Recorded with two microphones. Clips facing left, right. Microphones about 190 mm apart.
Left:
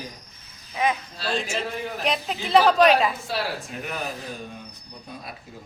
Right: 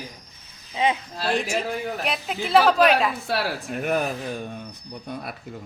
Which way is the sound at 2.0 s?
5° right (ahead or behind).